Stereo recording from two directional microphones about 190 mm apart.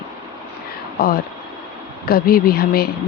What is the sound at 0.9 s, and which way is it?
Speech, 50° left (ahead or behind).